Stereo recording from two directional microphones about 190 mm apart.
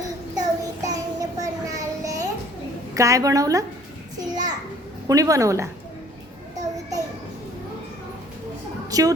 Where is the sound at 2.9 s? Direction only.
15° right (ahead or behind).